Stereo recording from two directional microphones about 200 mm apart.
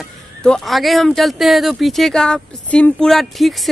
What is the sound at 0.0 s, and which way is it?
Speech, centre (ahead or behind).